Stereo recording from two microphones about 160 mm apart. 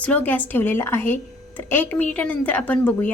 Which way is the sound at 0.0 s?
10° left (ahead or behind).